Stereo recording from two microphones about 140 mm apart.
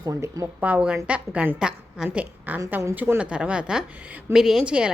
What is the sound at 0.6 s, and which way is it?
A woman's voice, 10° right (ahead or behind).